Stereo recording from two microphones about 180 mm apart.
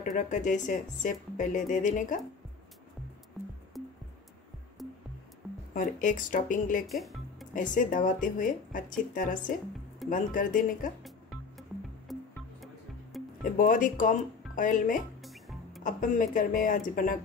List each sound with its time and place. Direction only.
0.0 s speech: 45° left (ahead or behind)
3.8 s music: centre (ahead or behind)
5.8 s speech: 45° left (ahead or behind)
6.9 s music: centre (ahead or behind)
7.5 s speech: 45° left (ahead or behind)
12.1 s music: centre (ahead or behind)
13.4 s speech: 50° left (ahead or behind)